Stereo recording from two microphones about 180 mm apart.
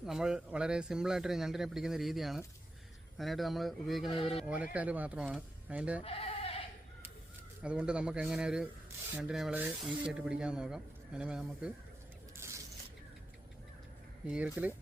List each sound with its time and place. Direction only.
0.0 s speech: 5° right (ahead or behind)
6.0 s bleat: 35° left (ahead or behind)
7.6 s speech: 5° right (ahead or behind)
14.3 s speech: 10° right (ahead or behind)